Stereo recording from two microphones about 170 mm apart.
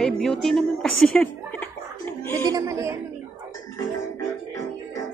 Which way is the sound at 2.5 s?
20° right (ahead or behind).